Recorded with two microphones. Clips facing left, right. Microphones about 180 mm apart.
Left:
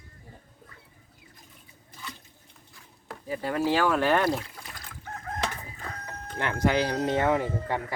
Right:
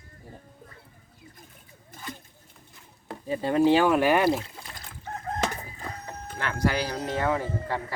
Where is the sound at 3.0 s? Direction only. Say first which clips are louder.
Right 3 dB; 25° right (ahead or behind).